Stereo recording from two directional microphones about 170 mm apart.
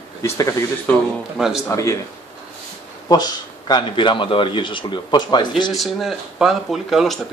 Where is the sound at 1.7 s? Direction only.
20° left (ahead or behind).